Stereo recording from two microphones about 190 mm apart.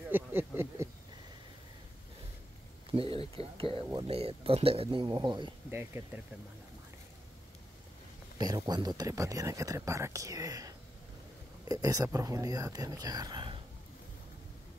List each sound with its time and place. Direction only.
0.1 s a sound: 10° right (ahead or behind)
2.9 s speech: 30° right (ahead or behind)
5.7 s speech: 10° right (ahead or behind)
8.4 s speech: 20° right (ahead or behind)
11.7 s speech: 20° right (ahead or behind)